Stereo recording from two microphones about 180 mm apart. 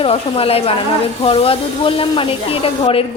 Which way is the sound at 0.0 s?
30° left (ahead or behind).